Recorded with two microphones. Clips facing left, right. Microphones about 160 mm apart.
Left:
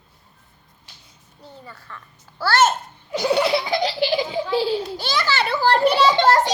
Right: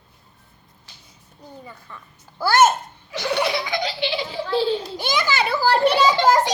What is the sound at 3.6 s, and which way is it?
Laughter, 35° left (ahead or behind).